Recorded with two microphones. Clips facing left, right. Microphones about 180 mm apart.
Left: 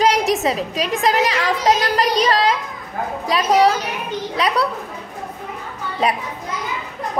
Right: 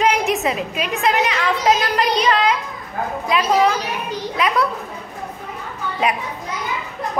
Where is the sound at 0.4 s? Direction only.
35° left (ahead or behind).